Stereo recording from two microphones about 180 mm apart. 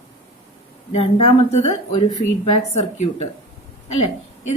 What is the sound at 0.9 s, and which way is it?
A woman's voice, 35° left (ahead or behind).